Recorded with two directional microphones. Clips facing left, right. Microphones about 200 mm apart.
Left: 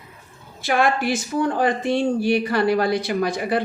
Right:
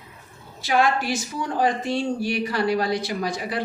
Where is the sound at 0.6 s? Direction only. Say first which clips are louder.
Left 1 dB; 55° left (ahead or behind).